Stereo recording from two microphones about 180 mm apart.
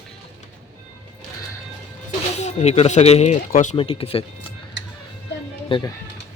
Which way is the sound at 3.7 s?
30° left (ahead or behind).